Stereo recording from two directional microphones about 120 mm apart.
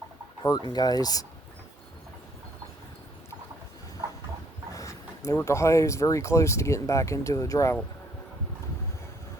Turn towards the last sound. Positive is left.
turn(degrees=25)  # may be behind; listen again after turning